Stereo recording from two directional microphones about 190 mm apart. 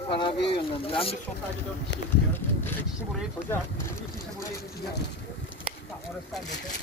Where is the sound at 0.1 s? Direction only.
25° left (ahead or behind).